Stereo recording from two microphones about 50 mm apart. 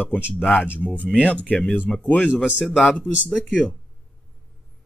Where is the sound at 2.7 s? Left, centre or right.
Left.